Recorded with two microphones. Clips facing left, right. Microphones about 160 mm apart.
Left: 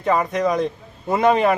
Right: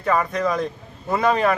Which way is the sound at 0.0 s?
20° left (ahead or behind).